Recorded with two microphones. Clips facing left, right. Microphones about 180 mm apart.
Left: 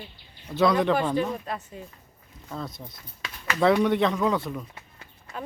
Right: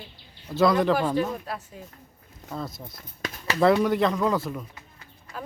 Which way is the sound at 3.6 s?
Centre (ahead or behind).